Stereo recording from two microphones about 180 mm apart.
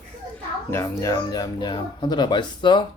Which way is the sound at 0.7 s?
15° left (ahead or behind).